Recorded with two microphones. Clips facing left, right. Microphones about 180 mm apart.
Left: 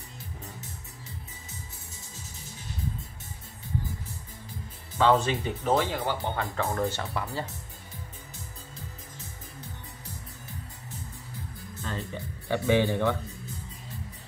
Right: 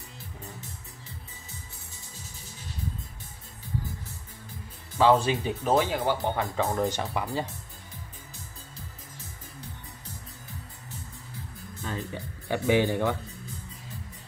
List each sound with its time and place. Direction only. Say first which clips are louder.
4.9 s speech: right 2 dB; 10° right (ahead or behind)
11.8 s music: right 1 dB; 10° right (ahead or behind)